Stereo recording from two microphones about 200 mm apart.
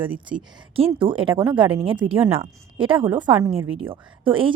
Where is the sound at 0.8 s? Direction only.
25° right (ahead or behind).